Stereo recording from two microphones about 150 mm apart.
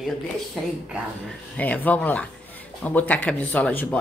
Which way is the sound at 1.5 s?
10° left (ahead or behind).